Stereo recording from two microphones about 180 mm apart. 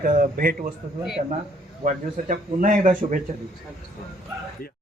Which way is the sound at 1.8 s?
45° right (ahead or behind).